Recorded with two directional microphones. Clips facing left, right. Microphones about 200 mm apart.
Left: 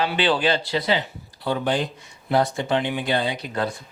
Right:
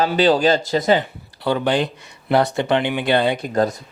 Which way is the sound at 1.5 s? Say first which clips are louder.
Right 4 dB; 75° right (ahead or behind).